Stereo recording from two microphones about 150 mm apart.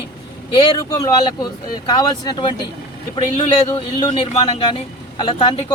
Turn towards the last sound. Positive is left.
turn(degrees=35)  # may be behind; listen again after turning